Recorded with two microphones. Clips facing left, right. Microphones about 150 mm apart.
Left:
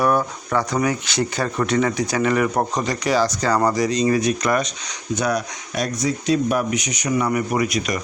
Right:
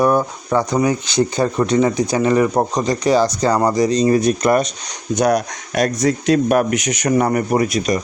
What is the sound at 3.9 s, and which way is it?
Speech, 35° right (ahead or behind).